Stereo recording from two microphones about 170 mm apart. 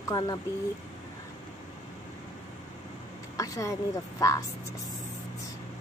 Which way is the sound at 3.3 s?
20° left (ahead or behind).